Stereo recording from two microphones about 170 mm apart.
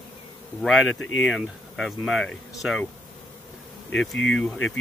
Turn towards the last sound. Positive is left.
turn(degrees=5)  # may be behind; listen again after turning